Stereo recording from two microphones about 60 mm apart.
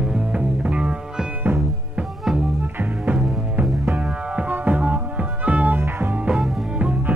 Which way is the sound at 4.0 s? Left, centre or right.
Centre.